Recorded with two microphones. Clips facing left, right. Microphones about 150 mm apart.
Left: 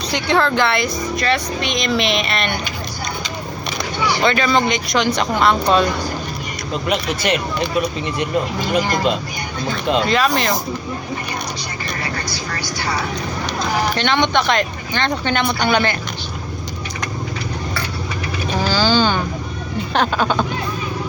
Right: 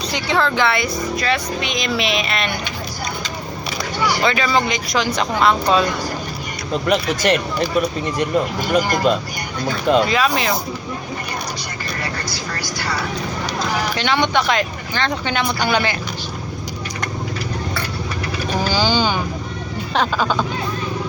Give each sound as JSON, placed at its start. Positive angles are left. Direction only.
{"t": 0.1, "sound": "speech", "side_deg": 0}
{"t": 4.2, "sound": "speech", "side_deg": -5}
{"t": 6.8, "sound": "speech", "side_deg": -45}
{"t": 10.1, "sound": "speech", "side_deg": -5}
{"t": 13.9, "sound": "speech", "side_deg": -10}
{"t": 18.5, "sound": "vehicle", "side_deg": -15}
{"t": 19.9, "sound": "speech", "side_deg": 0}